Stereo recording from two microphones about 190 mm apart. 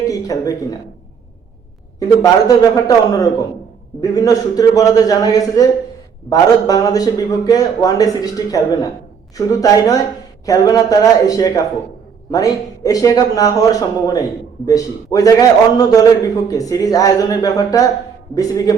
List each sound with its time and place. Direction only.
0.1 s speech: 20° left (ahead or behind)
2.0 s a man's voice: 20° left (ahead or behind)